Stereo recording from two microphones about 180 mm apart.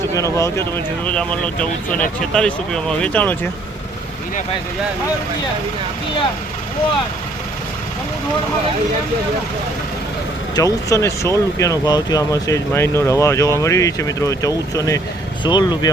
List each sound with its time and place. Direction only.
0.1 s speech: 15° left (ahead or behind)
10.5 s speech: 20° left (ahead or behind)